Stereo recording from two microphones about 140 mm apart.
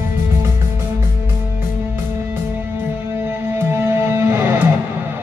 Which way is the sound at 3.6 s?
15° right (ahead or behind).